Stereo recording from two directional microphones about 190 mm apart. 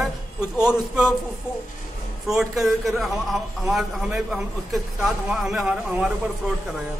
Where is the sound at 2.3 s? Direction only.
Centre (ahead or behind).